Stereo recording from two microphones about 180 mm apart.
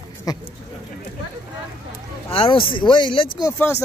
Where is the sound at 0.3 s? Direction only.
20° left (ahead or behind).